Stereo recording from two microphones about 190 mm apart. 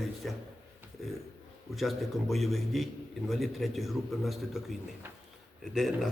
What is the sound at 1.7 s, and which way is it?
A man's voice, centre (ahead or behind).